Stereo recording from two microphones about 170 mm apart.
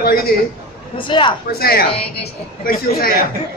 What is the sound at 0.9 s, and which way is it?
Speech, 30° left (ahead or behind).